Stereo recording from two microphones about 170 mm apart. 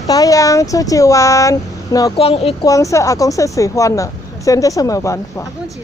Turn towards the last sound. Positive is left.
turn(degrees=20)  # may be behind; listen again after turning